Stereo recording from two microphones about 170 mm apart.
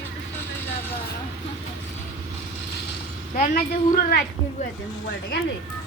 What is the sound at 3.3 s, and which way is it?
Speech, 50° left (ahead or behind).